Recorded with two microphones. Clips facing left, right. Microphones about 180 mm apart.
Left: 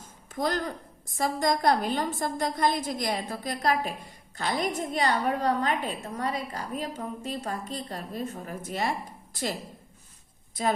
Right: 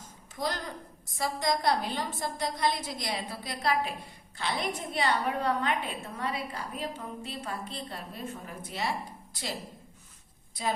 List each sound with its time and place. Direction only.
0.3 s a woman's voice: 50° left (ahead or behind)